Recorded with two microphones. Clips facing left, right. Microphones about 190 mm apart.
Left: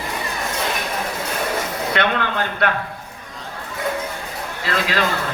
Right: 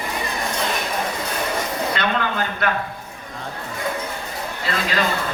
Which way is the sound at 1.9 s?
65° left (ahead or behind).